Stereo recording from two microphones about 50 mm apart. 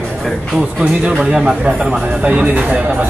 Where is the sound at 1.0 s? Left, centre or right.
Right.